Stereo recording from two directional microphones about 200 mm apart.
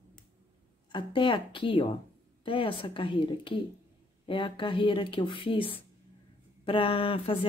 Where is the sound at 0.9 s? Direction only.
25° left (ahead or behind).